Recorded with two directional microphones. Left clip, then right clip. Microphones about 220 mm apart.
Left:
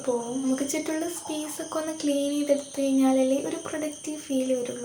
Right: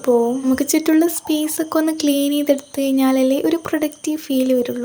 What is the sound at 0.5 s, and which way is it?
Speech, 45° right (ahead or behind).